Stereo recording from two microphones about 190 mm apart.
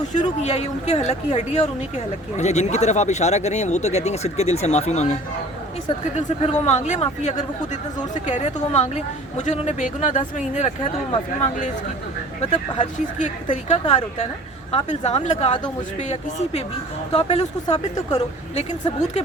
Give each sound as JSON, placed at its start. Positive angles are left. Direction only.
{"t": 0.1, "sound": "speech", "side_deg": 40}
{"t": 6.1, "sound": "speech", "side_deg": 35}
{"t": 12.7, "sound": "speech", "side_deg": 40}